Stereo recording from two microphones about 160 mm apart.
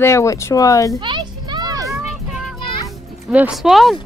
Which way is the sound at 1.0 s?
30° right (ahead or behind).